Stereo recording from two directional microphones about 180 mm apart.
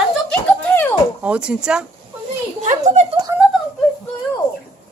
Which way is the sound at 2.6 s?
40° right (ahead or behind).